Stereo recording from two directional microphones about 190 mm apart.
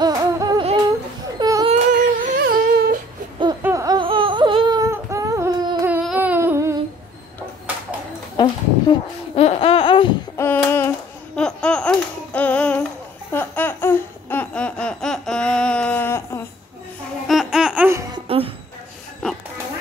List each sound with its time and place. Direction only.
0.0 s humming: 20° right (ahead or behind)
1.4 s baby cry: 20° right (ahead or behind)
1.7 s humming: 40° right (ahead or behind)
3.6 s a sound: 20° right (ahead or behind)
8.4 s babbling: 25° left (ahead or behind)
10.3 s a sound: 10° left (ahead or behind)
13.3 s laughter: 10° left (ahead or behind)
17.3 s laughter: centre (ahead or behind)
18.1 s music: 30° right (ahead or behind)